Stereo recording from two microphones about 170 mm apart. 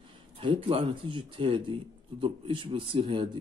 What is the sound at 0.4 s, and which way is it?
A man's voice, 30° right (ahead or behind).